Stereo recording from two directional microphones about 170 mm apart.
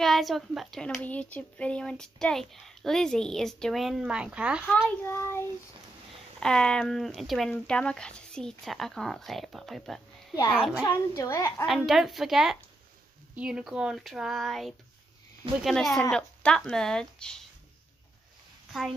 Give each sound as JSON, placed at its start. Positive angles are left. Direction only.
{"t": 0.0, "sound": "a woman's voice", "side_deg": 0}
{"t": 5.0, "sound": "child singing", "side_deg": 15}
{"t": 6.4, "sound": "a woman's voice", "side_deg": 5}
{"t": 11.1, "sound": "child singing", "side_deg": 15}
{"t": 11.6, "sound": "a woman's voice", "side_deg": 0}
{"t": 18.7, "sound": "speech", "side_deg": 0}